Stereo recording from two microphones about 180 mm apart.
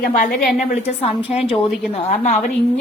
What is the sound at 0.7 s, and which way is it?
A woman's voice, 35° left (ahead or behind).